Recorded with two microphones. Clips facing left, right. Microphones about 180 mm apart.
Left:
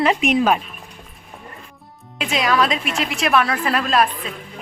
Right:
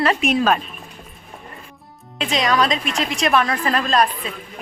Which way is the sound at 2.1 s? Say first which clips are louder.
Even; 5° left (ahead or behind).